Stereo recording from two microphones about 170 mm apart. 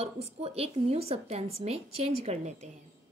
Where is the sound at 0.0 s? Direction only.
35° right (ahead or behind).